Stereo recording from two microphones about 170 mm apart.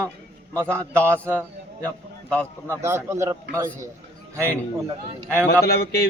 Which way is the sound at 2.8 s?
15° right (ahead or behind).